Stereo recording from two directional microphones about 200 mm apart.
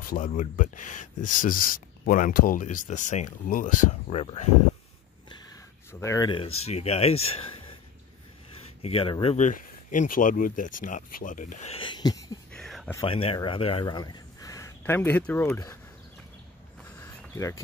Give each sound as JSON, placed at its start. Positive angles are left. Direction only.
{"t": 0.0, "sound": "speech", "side_deg": 40}
{"t": 5.9, "sound": "speech", "side_deg": 15}
{"t": 8.8, "sound": "speech", "side_deg": 25}
{"t": 12.5, "sound": "a sound", "side_deg": 0}
{"t": 13.0, "sound": "speech", "side_deg": 25}
{"t": 17.0, "sound": "a sound", "side_deg": 15}